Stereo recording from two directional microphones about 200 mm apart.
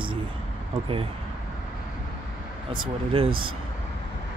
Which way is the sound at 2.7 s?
25° right (ahead or behind).